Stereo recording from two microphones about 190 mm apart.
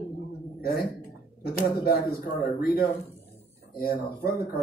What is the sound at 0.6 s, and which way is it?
A man's voice, 55° left (ahead or behind).